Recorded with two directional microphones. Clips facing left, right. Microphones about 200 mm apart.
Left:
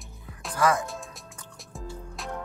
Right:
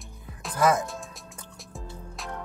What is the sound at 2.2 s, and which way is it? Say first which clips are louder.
Music: left 1 dB; centre (ahead or behind).